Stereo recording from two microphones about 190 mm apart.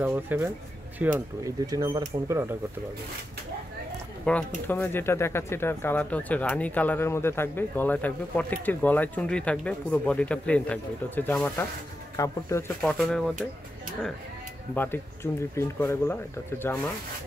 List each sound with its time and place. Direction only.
0.0 s speech: 10° right (ahead or behind)
4.3 s speech: 5° left (ahead or behind)
12.8 s speech: centre (ahead or behind)
15.5 s speech: 15° left (ahead or behind)